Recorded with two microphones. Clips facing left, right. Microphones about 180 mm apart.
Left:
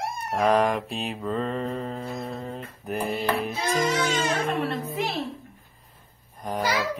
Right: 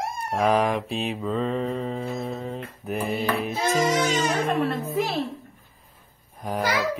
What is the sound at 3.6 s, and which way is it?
Music, 25° right (ahead or behind).